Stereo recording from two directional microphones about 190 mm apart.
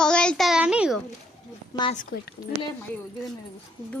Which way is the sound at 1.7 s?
20° left (ahead or behind).